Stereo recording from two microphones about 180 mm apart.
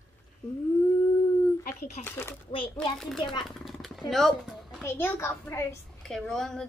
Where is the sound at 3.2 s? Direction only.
25° left (ahead or behind).